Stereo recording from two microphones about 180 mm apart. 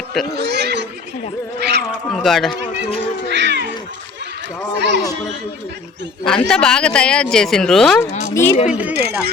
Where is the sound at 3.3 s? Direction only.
75° right (ahead or behind).